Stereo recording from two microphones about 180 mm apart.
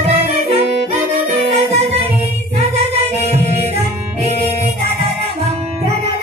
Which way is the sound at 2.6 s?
35° right (ahead or behind).